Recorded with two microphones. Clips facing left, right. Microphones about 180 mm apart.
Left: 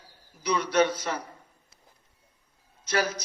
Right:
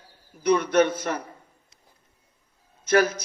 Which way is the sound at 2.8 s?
50° right (ahead or behind).